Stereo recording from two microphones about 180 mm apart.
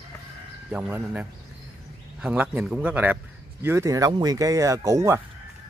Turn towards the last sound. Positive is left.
turn(degrees=-15)  # may be behind; listen again after turning